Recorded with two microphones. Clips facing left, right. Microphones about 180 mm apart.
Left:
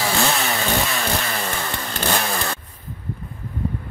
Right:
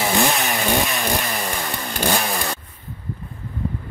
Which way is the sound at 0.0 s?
15° right (ahead or behind).